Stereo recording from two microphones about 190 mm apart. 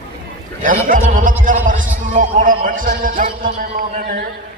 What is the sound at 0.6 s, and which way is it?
A man's voice, 45° right (ahead or behind).